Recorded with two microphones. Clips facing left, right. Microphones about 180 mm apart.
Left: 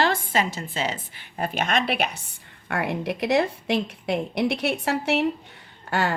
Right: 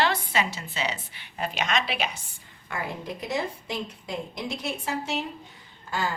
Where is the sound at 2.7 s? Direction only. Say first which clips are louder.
Left 7 dB; 70° left (ahead or behind).